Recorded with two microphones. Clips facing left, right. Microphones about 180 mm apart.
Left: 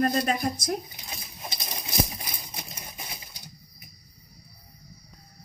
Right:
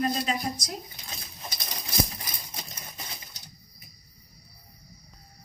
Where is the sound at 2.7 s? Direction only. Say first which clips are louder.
Left 1 dB; 10° left (ahead or behind).